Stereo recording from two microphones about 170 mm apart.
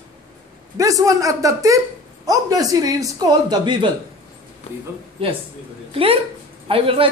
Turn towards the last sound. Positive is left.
turn(degrees=-35)  # may be behind; listen again after turning